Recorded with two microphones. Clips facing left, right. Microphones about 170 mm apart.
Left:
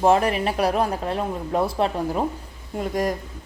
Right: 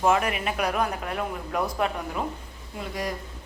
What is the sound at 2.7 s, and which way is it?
Speech, 45° left (ahead or behind).